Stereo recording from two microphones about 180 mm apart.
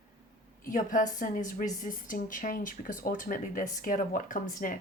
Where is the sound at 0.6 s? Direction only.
45° left (ahead or behind).